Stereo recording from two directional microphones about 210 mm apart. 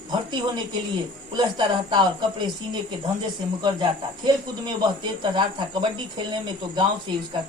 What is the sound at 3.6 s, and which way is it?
Speech, 20° right (ahead or behind).